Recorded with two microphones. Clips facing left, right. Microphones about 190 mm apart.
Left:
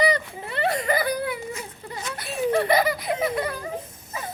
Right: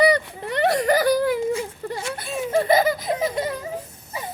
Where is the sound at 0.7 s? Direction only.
90° right.